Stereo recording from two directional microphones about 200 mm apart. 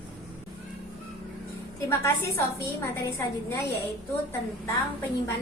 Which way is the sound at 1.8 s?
15° left (ahead or behind).